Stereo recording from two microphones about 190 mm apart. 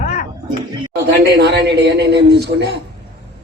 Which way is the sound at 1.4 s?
65° right (ahead or behind).